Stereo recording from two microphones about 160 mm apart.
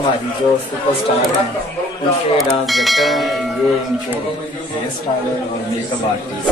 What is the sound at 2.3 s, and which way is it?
Speech, centre (ahead or behind).